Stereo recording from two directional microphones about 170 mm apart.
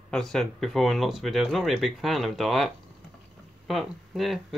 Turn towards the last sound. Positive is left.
turn(degrees=0)  # may be behind; listen again after turning